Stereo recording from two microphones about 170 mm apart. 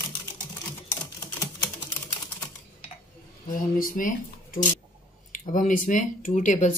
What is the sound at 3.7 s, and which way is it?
Speech, 55° left (ahead or behind).